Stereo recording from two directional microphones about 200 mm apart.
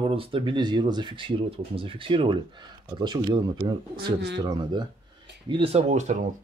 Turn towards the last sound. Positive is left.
turn(degrees=-35)  # may be behind; listen again after turning